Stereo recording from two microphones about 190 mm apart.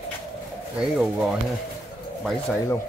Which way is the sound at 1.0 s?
Centre (ahead or behind).